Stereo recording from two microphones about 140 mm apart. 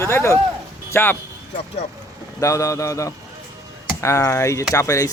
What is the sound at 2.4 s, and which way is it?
Speech, 20° left (ahead or behind).